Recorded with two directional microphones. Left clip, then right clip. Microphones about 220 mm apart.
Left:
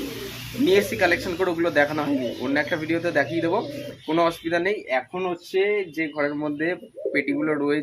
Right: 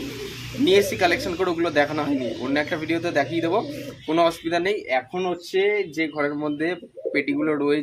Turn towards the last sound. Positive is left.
turn(degrees=-5)  # may be behind; listen again after turning